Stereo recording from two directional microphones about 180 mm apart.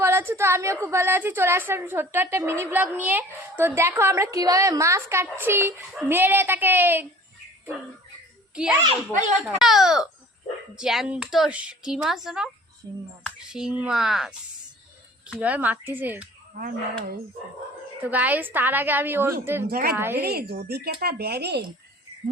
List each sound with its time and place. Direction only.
0.0 s a woman's voice: 15° right (ahead or behind)
8.5 s speech: 5° right (ahead or behind)
13.5 s a woman's voice: 5° right (ahead or behind)
16.6 s speech: 55° right (ahead or behind)
18.1 s a woman's voice: 10° right (ahead or behind)
19.6 s speech: 55° right (ahead or behind)